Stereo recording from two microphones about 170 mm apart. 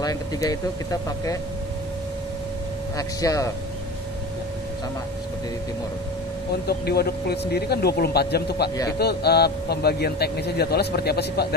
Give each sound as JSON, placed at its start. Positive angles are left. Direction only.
{"t": 0.0, "sound": "speech", "side_deg": 20}
{"t": 3.0, "sound": "speech", "side_deg": 20}
{"t": 6.7, "sound": "speech", "side_deg": 70}